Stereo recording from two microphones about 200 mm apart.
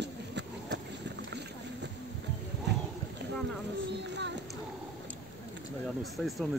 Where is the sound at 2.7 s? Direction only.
60° right (ahead or behind).